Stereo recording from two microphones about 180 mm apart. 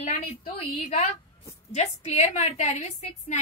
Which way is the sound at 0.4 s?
40° left (ahead or behind).